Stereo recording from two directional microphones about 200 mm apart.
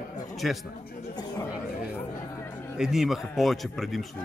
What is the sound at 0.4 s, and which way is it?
Speech, centre (ahead or behind).